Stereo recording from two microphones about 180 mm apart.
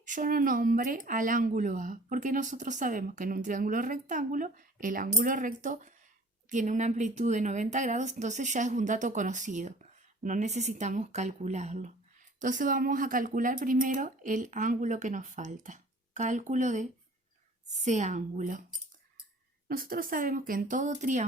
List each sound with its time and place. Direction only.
0.0 s speech: 45° right (ahead or behind)
17.8 s speech: 40° right (ahead or behind)
19.6 s speech: 55° right (ahead or behind)